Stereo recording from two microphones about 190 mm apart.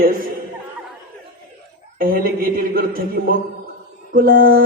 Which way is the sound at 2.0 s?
50° right (ahead or behind).